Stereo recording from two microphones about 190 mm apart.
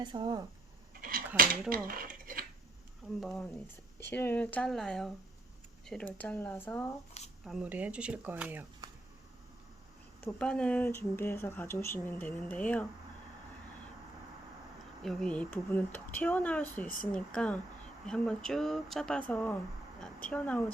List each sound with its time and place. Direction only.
0.0 s speech: 25° right (ahead or behind)
1.4 s speech: 50° right (ahead or behind)
1.9 s dishes: 45° right (ahead or behind)
3.2 s speech: centre (ahead or behind)
7.4 s speech: 5° right (ahead or behind)
8.8 s a sound: 20° right (ahead or behind)
10.2 s speech: 5° left (ahead or behind)
15.0 s speech: 5° left (ahead or behind)